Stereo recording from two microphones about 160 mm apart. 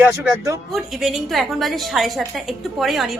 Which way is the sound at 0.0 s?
15° right (ahead or behind).